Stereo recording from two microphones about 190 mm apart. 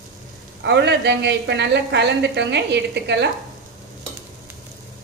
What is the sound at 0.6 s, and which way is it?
A woman's voice, 65° right (ahead or behind).